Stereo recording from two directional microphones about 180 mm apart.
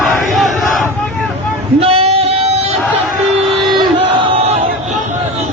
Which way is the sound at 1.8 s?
35° right (ahead or behind).